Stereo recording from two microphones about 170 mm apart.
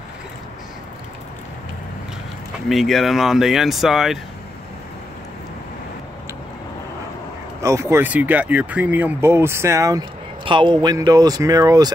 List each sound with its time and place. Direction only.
2.7 s speech: centre (ahead or behind)
7.6 s speech: 15° right (ahead or behind)